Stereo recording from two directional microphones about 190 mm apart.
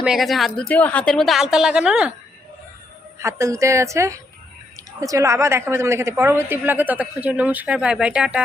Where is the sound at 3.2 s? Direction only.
15° right (ahead or behind).